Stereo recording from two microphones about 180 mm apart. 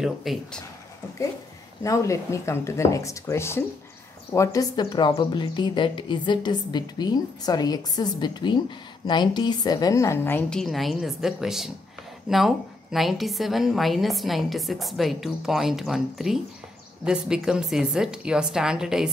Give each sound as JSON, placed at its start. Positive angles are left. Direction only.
{"t": 0.0, "sound": "a woman's voice", "side_deg": 0}
{"t": 1.8, "sound": "a woman's voice", "side_deg": 15}